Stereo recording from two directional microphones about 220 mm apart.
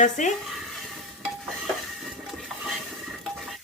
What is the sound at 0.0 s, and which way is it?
Speech, 35° left (ahead or behind).